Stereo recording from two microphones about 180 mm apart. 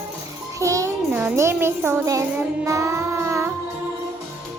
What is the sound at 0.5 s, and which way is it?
Music, 15° right (ahead or behind).